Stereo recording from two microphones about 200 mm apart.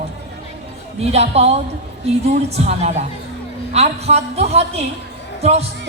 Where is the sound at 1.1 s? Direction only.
30° right (ahead or behind).